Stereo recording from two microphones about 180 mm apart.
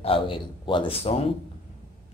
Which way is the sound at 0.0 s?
30° left (ahead or behind).